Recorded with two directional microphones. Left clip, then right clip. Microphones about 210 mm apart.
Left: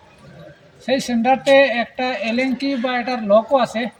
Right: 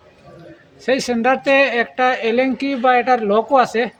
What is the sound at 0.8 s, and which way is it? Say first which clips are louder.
Speech: right 2 dB; 40° right (ahead or behind).